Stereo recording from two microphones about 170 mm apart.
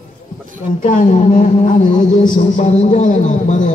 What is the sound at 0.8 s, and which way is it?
Speech, 50° left (ahead or behind).